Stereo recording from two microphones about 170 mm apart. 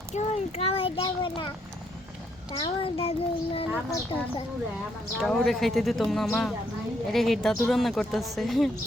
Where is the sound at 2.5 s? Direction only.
25° left (ahead or behind).